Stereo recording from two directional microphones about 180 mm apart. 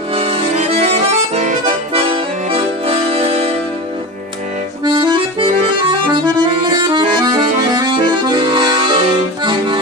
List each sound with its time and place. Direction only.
0.1 s accordion: 30° right (ahead or behind)
4.8 s accordion: 25° right (ahead or behind)
9.4 s music: 25° right (ahead or behind)